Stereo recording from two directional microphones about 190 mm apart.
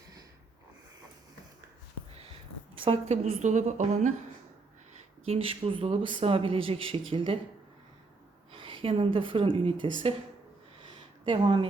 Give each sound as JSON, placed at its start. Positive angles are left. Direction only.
{"t": 2.7, "sound": "a woman's voice", "side_deg": -30}
{"t": 5.2, "sound": "a man's voice", "side_deg": -30}
{"t": 8.5, "sound": "a woman's voice", "side_deg": -30}
{"t": 11.3, "sound": "a man's voice", "side_deg": -25}